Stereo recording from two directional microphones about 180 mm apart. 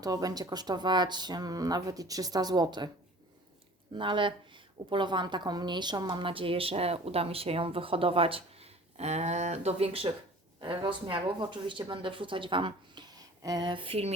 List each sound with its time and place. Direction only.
0.0 s speech: 20° right (ahead or behind)
3.9 s a woman's voice: 25° right (ahead or behind)